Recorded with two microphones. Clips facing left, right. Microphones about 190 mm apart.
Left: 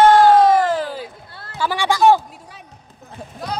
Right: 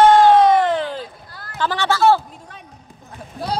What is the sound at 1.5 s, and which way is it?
Speech, 10° left (ahead or behind).